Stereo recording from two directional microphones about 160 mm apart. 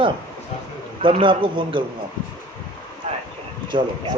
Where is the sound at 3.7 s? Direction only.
30° right (ahead or behind).